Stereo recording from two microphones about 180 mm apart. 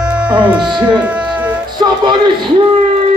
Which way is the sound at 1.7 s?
25° right (ahead or behind).